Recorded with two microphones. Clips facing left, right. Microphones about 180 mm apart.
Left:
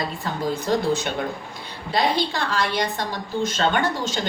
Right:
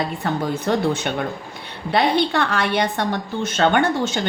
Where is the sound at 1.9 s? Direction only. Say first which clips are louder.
Right 4 dB; 65° right (ahead or behind).